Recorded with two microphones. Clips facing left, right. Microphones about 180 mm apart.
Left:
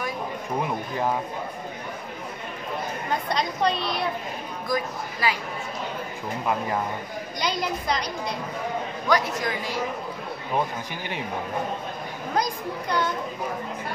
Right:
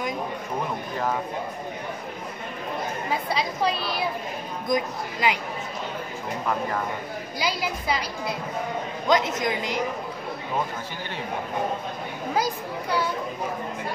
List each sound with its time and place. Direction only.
3.1 s a woman's voice: 5° right (ahead or behind)
4.6 s a man's voice: 20° right (ahead or behind)
7.3 s a woman's voice: 5° right (ahead or behind)
9.0 s a man's voice: 20° right (ahead or behind)
12.4 s a woman's voice: 5° right (ahead or behind)